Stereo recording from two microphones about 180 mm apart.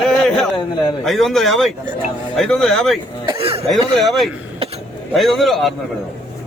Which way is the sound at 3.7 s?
Centre (ahead or behind).